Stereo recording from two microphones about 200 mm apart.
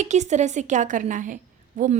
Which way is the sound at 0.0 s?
35° right (ahead or behind).